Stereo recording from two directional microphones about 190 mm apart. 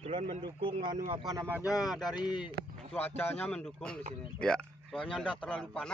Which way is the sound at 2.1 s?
25° left (ahead or behind).